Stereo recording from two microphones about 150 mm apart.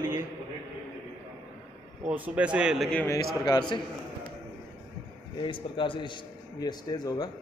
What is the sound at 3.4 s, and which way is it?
Speech, 30° left (ahead or behind).